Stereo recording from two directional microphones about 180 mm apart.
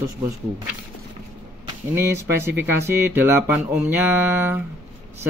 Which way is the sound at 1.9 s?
15° right (ahead or behind).